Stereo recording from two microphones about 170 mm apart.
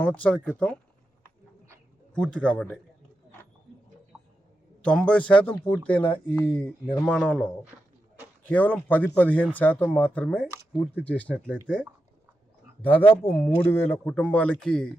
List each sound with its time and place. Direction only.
0.0 s speech: 10° left (ahead or behind)
2.1 s speech: 5° left (ahead or behind)
4.8 s speech: 5° left (ahead or behind)